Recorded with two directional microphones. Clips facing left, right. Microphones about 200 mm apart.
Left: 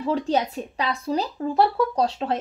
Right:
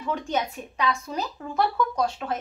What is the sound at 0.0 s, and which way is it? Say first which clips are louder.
Speech: left 5 dB; 35° left (ahead or behind).